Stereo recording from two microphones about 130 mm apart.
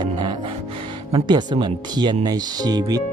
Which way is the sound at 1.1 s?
35° right (ahead or behind).